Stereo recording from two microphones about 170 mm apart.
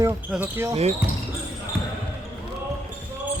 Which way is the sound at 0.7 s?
40° right (ahead or behind).